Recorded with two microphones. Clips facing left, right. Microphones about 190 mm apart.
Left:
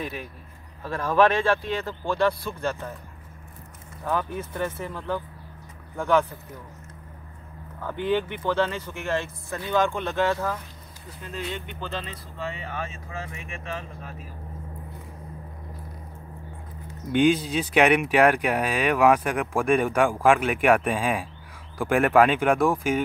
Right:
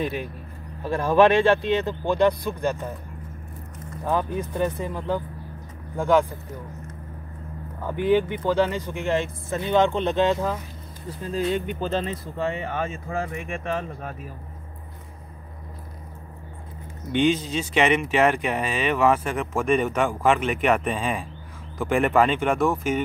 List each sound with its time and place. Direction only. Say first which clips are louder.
0.8 s speech: right 3 dB; 25° right (ahead or behind)
4.0 s speech: right 3 dB; 15° right (ahead or behind)
7.8 s speech: right 4 dB; 10° right (ahead or behind)
11.1 s speech: right 9 dB; 35° right (ahead or behind); by 14.1 s 55° right (ahead or behind)
17.1 s speech: left 1 dB; 10° left (ahead or behind)